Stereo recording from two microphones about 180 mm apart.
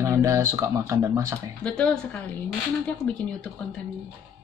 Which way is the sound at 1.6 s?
5° left (ahead or behind).